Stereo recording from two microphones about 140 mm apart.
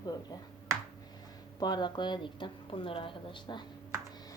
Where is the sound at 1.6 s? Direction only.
30° left (ahead or behind).